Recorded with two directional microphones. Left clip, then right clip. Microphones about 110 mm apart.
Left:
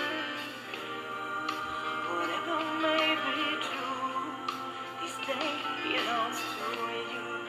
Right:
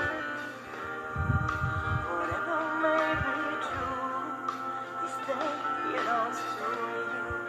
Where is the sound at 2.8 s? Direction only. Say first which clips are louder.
Right 1 dB; 20° right (ahead or behind).